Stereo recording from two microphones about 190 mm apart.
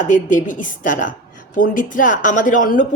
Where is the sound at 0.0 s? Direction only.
40° left (ahead or behind).